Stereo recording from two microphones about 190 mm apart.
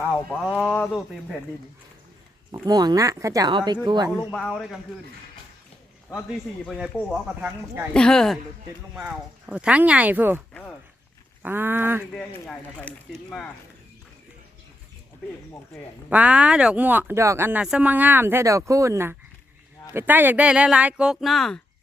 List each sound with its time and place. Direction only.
0.1 s speech: centre (ahead or behind)
2.5 s speech: 20° right (ahead or behind)
4.1 s speech: centre (ahead or behind)
6.3 s speech: 5° right (ahead or behind)
7.9 s speech: 5° left (ahead or behind)
9.0 s speech: 5° right (ahead or behind)
10.5 s speech: 5° left (ahead or behind)
11.4 s speech: 10° right (ahead or behind)
12.1 s speech: 5° left (ahead or behind)
16.0 s speech: 5° right (ahead or behind)